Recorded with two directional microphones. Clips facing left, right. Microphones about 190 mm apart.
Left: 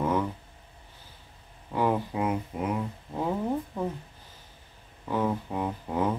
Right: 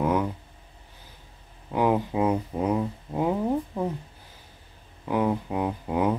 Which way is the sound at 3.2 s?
15° right (ahead or behind).